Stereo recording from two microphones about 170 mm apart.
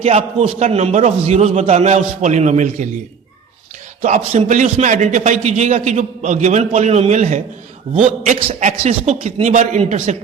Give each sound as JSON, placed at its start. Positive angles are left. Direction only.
{"t": 0.0, "sound": "a man's voice", "side_deg": -40}
{"t": 4.0, "sound": "a man's voice", "side_deg": -40}
{"t": 8.4, "sound": "a man's voice", "side_deg": -35}